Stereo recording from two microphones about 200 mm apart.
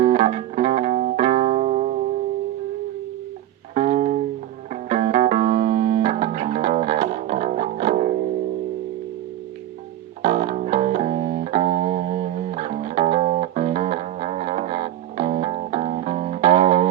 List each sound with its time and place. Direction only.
0.0 s music: 35° right (ahead or behind)
3.8 s music: 35° right (ahead or behind)
10.2 s music: 35° right (ahead or behind)